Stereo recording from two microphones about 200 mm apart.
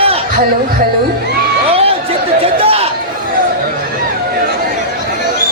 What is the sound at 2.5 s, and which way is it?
Chatter, 30° right (ahead or behind).